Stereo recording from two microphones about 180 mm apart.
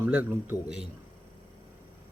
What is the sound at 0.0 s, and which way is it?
Speech, 10° right (ahead or behind).